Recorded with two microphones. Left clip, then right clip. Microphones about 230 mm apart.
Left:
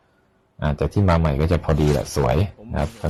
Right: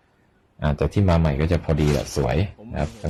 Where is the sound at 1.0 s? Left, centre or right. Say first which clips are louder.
Left 3 dB; centre.